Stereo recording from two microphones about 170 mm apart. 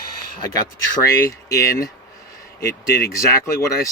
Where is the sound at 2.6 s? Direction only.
70° left (ahead or behind).